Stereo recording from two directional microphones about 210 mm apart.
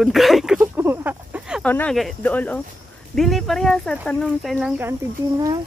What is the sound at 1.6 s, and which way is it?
Speech, 5° left (ahead or behind).